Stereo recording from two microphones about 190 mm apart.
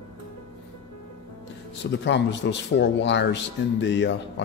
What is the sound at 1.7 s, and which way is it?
Speech, 65° left (ahead or behind).